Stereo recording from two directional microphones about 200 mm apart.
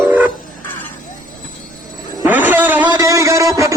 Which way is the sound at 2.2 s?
10° right (ahead or behind).